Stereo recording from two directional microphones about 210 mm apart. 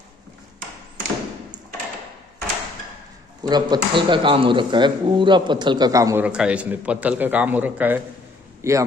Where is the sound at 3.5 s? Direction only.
20° right (ahead or behind).